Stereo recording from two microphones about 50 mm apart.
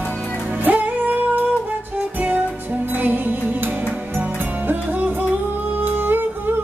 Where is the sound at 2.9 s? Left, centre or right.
Right.